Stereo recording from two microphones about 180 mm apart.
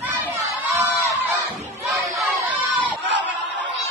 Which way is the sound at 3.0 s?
80° right.